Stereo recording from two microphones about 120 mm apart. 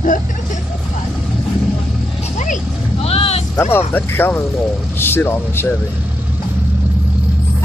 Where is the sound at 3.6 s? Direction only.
20° left (ahead or behind).